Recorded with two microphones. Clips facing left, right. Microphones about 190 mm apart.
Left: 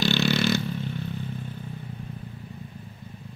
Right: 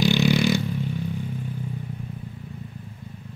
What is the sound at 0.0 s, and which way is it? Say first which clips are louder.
Vehicle: right 3 dB; 15° right (ahead or behind).